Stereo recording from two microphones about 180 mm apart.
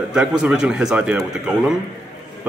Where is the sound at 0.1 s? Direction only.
5° right (ahead or behind).